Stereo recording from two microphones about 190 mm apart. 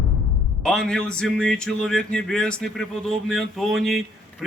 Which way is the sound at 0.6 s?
Centre (ahead or behind).